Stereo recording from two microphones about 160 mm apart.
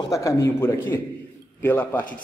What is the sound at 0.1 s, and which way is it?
A man's voice, 20° left (ahead or behind).